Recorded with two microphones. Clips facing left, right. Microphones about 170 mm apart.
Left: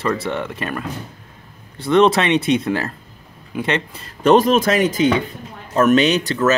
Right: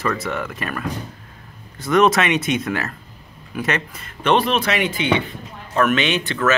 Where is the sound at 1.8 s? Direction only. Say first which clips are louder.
Left 2 dB; 30° left (ahead or behind).